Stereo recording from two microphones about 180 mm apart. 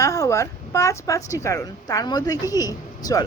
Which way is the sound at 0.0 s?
15° left (ahead or behind).